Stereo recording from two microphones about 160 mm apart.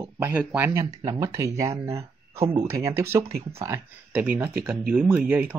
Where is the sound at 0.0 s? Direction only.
15° right (ahead or behind).